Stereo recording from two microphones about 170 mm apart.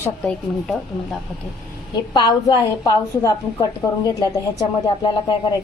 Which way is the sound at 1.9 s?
25° left (ahead or behind).